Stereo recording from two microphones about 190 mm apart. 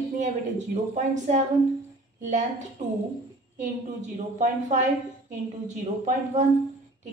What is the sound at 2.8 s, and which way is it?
A woman's voice, 40° right (ahead or behind).